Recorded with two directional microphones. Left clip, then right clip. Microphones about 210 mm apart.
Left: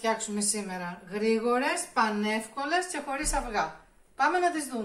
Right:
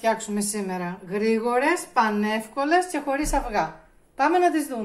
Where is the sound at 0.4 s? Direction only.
25° right (ahead or behind).